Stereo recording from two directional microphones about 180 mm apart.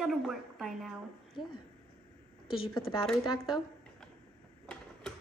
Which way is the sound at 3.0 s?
Centre (ahead or behind).